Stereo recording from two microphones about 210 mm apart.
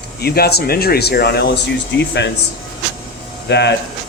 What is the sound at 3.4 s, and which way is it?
Speech, 55° left (ahead or behind).